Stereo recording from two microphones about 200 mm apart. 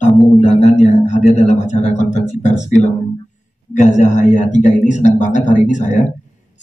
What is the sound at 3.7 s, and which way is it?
Speech, 35° left (ahead or behind).